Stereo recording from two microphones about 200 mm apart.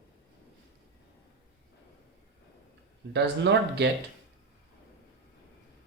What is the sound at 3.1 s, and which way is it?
Speech, 60° right (ahead or behind).